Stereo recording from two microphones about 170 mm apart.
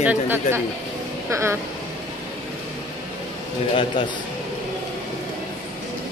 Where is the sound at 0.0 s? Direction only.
10° right (ahead or behind).